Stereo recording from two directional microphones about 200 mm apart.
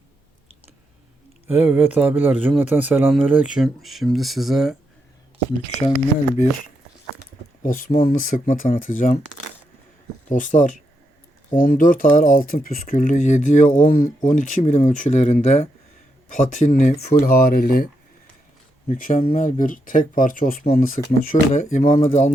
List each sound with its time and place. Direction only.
1.5 s speech: 10° right (ahead or behind)
7.6 s speech: 45° left (ahead or behind)
10.2 s speech: 40° left (ahead or behind)
18.9 s speech: 45° left (ahead or behind)